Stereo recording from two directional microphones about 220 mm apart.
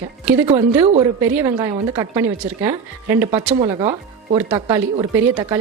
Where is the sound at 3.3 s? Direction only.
25° right (ahead or behind).